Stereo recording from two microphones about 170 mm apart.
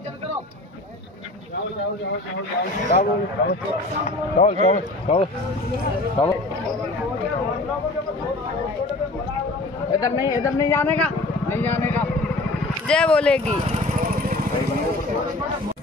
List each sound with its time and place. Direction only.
2.9 s speech: 60° left (ahead or behind)
4.4 s a man's voice: 40° left (ahead or behind)
9.9 s speech: 20° left (ahead or behind); by 13.6 s 5° left (ahead or behind)